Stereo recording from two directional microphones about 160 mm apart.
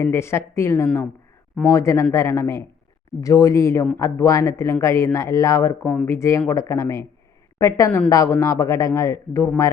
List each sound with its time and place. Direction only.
0.0 s a woman's voice: 15° left (ahead or behind)